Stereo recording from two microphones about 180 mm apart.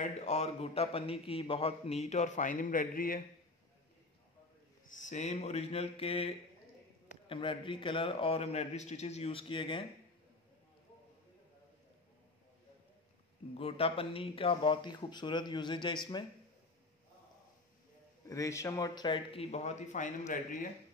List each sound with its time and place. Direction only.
0.0 s a man's voice: 40° left (ahead or behind)
5.0 s a man's voice: 40° left (ahead or behind)
13.6 s speech: 30° left (ahead or behind)
18.2 s speech: 20° left (ahead or behind); by 20.3 s 40° left (ahead or behind)